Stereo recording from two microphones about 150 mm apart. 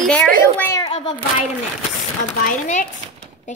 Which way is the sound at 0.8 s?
30° left (ahead or behind).